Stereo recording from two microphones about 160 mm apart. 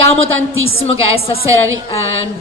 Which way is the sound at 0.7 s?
35° left (ahead or behind).